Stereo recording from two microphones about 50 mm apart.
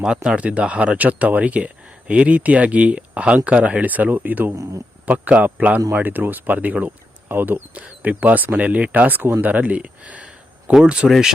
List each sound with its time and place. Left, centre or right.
0.3 s speech: right
7.7 s speech: right
11.0 s speech: centre